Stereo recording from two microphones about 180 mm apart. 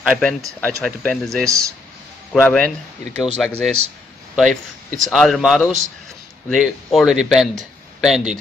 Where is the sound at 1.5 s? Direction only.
20° right (ahead or behind).